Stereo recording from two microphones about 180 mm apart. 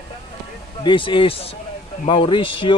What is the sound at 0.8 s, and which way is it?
Speech, 25° left (ahead or behind).